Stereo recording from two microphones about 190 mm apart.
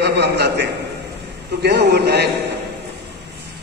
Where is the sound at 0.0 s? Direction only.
60° right (ahead or behind).